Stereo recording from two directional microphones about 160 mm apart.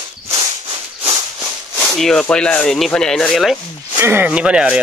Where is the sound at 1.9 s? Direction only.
5° left (ahead or behind).